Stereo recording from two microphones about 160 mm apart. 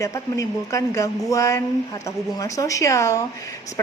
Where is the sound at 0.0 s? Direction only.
20° left (ahead or behind).